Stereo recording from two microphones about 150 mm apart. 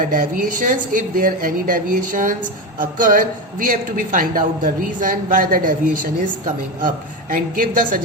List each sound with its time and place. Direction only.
0.0 s a woman's voice: 65° right (ahead or behind)